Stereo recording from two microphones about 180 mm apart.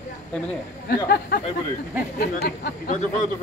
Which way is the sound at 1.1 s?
60° left (ahead or behind).